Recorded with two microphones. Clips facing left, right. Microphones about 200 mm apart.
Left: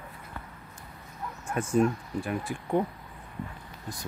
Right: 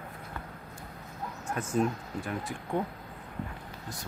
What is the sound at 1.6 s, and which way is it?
Speech, 10° left (ahead or behind).